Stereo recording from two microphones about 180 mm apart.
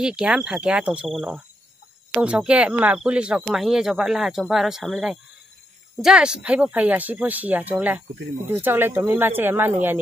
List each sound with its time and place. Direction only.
0.0 s speech: 5° right (ahead or behind)